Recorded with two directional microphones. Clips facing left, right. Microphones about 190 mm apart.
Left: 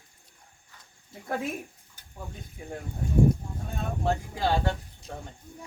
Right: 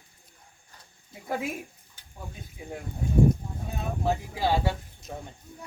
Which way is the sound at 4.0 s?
5° right (ahead or behind).